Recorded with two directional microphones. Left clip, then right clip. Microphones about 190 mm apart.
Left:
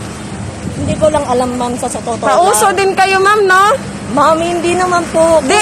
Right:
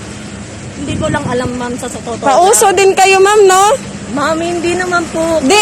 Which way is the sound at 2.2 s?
45° right (ahead or behind).